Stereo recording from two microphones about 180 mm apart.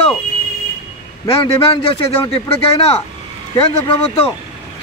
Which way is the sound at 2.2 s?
30° left (ahead or behind).